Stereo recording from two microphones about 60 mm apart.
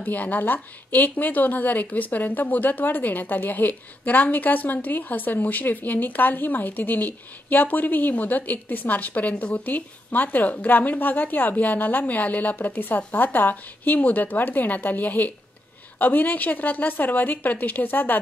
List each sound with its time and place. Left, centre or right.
0.0 s a woman's voice: left